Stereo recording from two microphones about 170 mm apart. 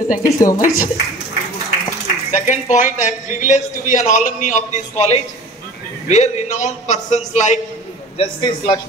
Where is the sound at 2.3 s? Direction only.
45° left (ahead or behind).